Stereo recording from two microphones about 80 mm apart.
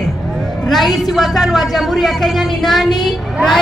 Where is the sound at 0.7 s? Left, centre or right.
Centre.